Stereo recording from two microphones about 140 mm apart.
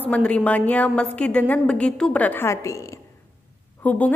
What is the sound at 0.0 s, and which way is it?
A woman's voice, 10° left (ahead or behind).